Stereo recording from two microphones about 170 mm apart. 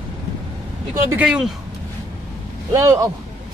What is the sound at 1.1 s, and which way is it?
Speech, 5° right (ahead or behind).